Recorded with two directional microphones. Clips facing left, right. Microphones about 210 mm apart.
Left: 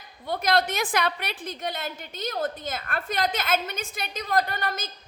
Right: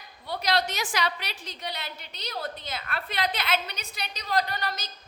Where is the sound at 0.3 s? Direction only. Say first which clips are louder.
Left 3 dB; 50° left (ahead or behind).